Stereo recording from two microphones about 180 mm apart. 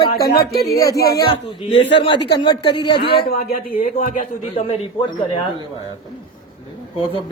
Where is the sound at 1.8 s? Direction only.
80° left.